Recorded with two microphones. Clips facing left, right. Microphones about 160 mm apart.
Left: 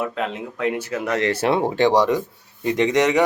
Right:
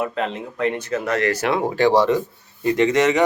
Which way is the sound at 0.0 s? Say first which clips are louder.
Right 1 dB; centre (ahead or behind).